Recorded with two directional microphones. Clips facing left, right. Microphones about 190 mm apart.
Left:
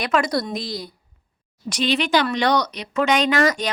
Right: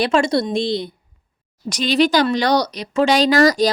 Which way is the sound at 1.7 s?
40° right (ahead or behind).